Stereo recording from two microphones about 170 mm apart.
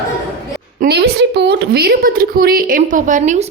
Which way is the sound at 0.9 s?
75° right (ahead or behind).